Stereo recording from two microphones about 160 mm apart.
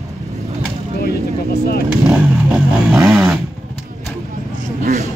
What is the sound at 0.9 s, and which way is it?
Vehicle, 80° left.